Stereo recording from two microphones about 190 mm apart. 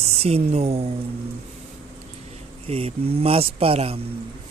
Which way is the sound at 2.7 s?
30° right (ahead or behind).